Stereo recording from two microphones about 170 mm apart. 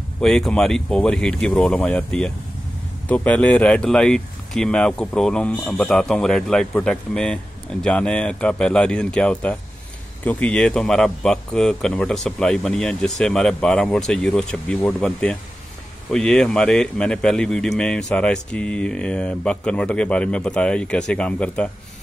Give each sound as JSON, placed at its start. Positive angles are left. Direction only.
{"t": 0.2, "sound": "speech", "side_deg": 5}